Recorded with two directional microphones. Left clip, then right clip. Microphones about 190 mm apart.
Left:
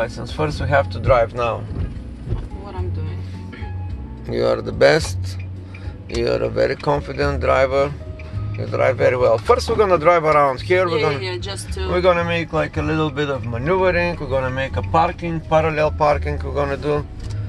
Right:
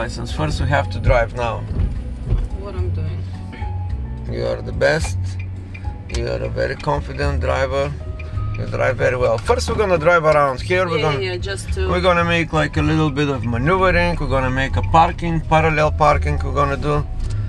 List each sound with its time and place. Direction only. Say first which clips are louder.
0.4 s speech: left 2 dB; 5° left (ahead or behind)
4.3 s speech: left 4 dB; 40° left (ahead or behind)
6.2 s speech: left 4 dB; 40° left (ahead or behind); by 11.1 s 5° left (ahead or behind)
11.2 s speech: right 2 dB; 60° left (ahead or behind)
11.9 s speech: right 1 dB; 5° right (ahead or behind)